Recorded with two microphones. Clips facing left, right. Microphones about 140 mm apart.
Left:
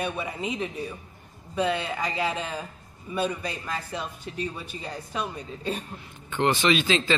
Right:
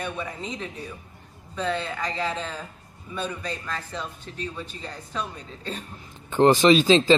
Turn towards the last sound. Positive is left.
turn(degrees=-35)  # may be behind; listen again after turning